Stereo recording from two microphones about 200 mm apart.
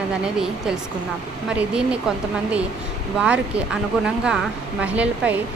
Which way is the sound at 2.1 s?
5° right (ahead or behind).